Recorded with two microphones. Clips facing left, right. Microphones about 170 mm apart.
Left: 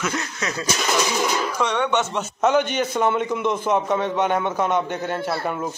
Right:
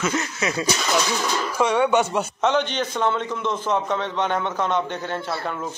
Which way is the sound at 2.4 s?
10° left (ahead or behind).